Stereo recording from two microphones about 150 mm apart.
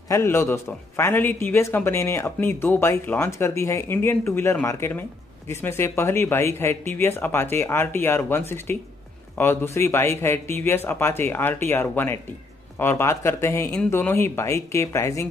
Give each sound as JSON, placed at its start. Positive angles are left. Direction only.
{"t": 0.1, "sound": "a man's voice", "side_deg": 15}